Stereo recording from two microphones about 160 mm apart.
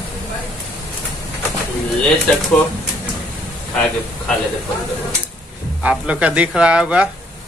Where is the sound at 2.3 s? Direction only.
10° left (ahead or behind).